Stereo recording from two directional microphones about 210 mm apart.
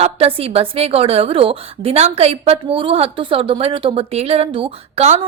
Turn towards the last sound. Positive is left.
turn(degrees=-30)  # may be behind; listen again after turning